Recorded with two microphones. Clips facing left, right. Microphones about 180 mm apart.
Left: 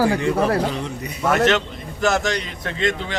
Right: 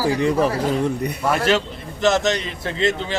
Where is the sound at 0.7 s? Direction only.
55° right (ahead or behind).